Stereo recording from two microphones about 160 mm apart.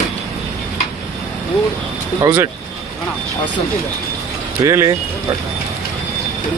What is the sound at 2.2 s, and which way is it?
Speech, 15° right (ahead or behind).